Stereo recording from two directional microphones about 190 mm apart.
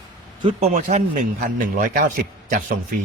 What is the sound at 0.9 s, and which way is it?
Speech, 45° right (ahead or behind).